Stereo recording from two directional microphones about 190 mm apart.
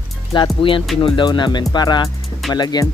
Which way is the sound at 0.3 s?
25° left (ahead or behind).